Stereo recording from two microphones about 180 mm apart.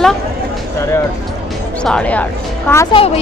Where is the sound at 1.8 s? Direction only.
5° left (ahead or behind).